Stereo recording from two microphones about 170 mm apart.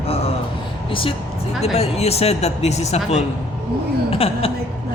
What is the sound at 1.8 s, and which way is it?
Speech, 40° left (ahead or behind).